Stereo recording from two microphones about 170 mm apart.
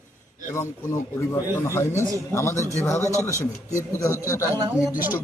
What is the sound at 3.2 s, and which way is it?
A man's voice, 15° left (ahead or behind).